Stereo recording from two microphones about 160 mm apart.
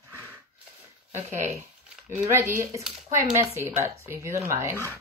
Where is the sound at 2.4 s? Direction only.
15° right (ahead or behind).